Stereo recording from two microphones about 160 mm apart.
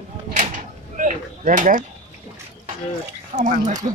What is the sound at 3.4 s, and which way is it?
Speech, 50° right (ahead or behind).